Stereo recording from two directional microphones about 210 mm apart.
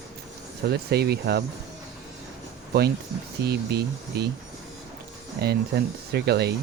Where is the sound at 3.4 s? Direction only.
50° right (ahead or behind).